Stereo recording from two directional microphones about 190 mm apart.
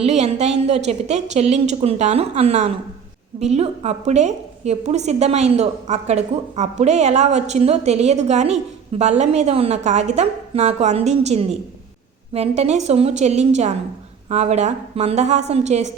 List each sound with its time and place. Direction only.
0.0 s a woman's voice: 35° right (ahead or behind)